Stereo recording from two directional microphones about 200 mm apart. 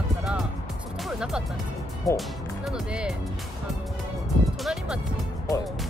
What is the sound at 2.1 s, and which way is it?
Speech, centre (ahead or behind).